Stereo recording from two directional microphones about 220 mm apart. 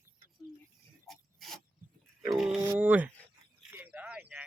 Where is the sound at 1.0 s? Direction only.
Centre (ahead or behind).